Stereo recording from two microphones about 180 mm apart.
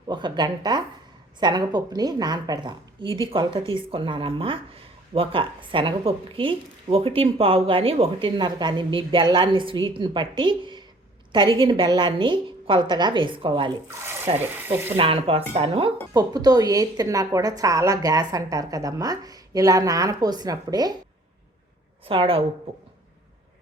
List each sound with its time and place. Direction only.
0.1 s speech: 25° right (ahead or behind)
14.3 s speech: 10° right (ahead or behind)
14.9 s speech: 30° right (ahead or behind)
16.1 s speech: 20° right (ahead or behind)
22.0 s speech: 30° right (ahead or behind)